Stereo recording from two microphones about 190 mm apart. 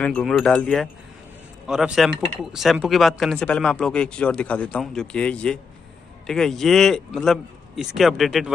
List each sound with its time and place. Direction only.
0.0 s speech: 5° left (ahead or behind)